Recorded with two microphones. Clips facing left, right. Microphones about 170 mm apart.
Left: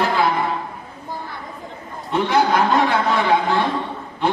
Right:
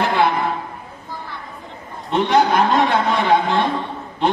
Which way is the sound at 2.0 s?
20° right (ahead or behind).